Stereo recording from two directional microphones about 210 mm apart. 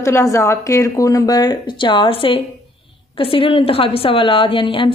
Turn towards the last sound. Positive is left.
turn(degrees=25)  # may be behind; listen again after turning